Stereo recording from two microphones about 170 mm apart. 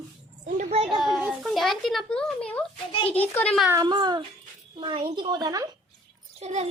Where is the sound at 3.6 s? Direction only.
20° right (ahead or behind).